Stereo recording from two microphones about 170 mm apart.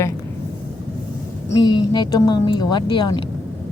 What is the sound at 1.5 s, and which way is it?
Speech, 25° left (ahead or behind).